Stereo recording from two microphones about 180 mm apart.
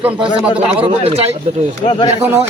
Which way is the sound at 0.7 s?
35° right (ahead or behind).